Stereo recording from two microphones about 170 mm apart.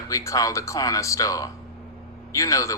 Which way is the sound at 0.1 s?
20° left (ahead or behind).